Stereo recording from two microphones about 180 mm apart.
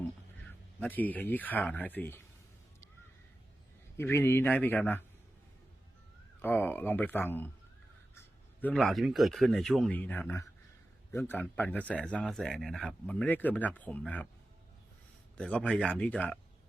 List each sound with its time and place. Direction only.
0.8 s speech: 10° left (ahead or behind)
3.9 s speech: 15° left (ahead or behind)
6.4 s speech: 10° left (ahead or behind)
8.1 s a sound: 15° left (ahead or behind)
8.7 s speech: centre (ahead or behind)
15.4 s speech: 5° left (ahead or behind)